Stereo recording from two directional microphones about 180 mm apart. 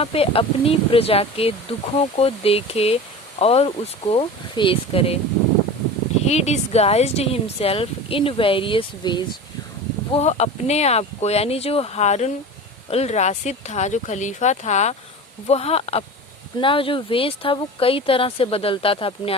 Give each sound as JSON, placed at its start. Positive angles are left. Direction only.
{"t": 0.0, "sound": "speech", "side_deg": 30}
{"t": 6.2, "sound": "speech", "side_deg": 35}
{"t": 10.1, "sound": "speech", "side_deg": 35}